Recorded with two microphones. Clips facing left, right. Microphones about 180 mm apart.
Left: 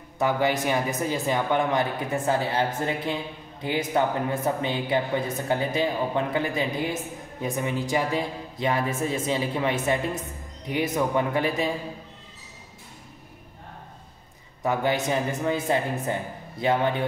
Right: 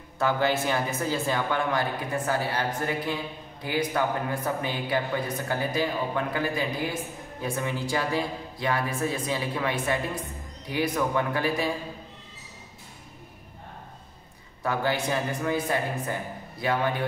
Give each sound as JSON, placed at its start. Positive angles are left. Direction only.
{"t": 0.2, "sound": "speech", "side_deg": 15}
{"t": 14.6, "sound": "speech", "side_deg": 20}